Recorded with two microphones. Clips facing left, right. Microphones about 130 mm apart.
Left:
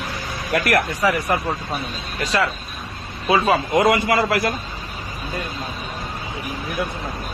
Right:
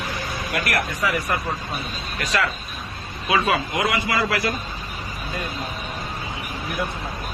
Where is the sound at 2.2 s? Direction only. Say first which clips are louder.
Left 3 dB; 30° left (ahead or behind); by 4.5 s 50° left (ahead or behind).